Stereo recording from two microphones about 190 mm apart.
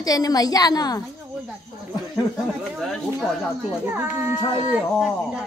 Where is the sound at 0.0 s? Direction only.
20° left (ahead or behind).